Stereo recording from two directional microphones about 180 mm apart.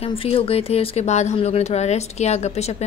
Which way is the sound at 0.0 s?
30° left (ahead or behind).